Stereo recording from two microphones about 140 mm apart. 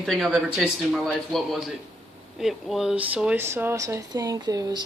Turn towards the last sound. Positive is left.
turn(degrees=-30)  # may be behind; listen again after turning